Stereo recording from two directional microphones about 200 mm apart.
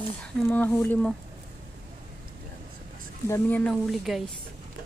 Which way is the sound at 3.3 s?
10° left (ahead or behind).